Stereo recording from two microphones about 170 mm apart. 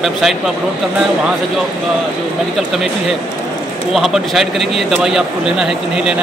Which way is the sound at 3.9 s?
Centre (ahead or behind).